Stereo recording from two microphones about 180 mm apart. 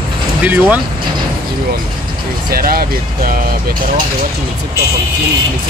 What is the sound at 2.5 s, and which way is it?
Speech, 55° right (ahead or behind).